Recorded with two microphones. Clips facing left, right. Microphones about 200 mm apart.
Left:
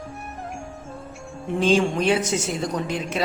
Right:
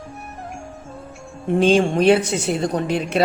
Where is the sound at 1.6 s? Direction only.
60° right (ahead or behind).